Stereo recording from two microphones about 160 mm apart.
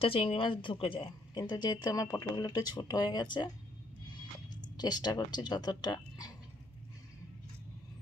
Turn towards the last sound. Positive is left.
turn(degrees=25)  # may be behind; listen again after turning